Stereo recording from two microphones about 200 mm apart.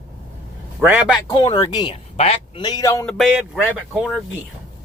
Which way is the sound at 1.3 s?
25° left (ahead or behind).